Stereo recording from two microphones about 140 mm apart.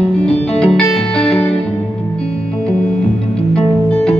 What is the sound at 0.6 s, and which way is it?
Music, 5° left (ahead or behind).